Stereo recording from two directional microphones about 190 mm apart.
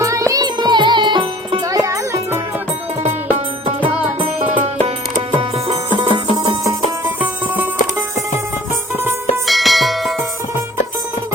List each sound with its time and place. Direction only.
0.0 s music: 15° right (ahead or behind)
3.8 s music: 30° right (ahead or behind)
7.0 s music: 10° right (ahead or behind)
9.5 s church bell: centre (ahead or behind)